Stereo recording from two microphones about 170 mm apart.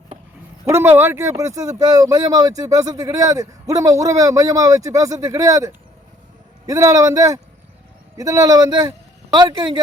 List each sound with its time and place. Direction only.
0.6 s speech: 15° right (ahead or behind)